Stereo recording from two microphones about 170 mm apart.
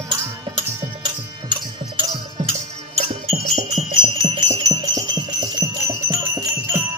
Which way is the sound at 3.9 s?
30° right (ahead or behind).